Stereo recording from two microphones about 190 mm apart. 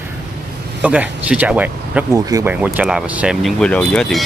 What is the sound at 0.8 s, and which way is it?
Speech, 5° right (ahead or behind).